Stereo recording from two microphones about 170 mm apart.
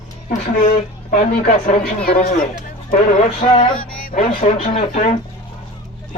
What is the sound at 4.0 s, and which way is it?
Music, 55° left (ahead or behind).